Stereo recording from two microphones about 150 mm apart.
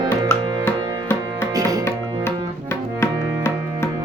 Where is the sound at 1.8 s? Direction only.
15° left (ahead or behind).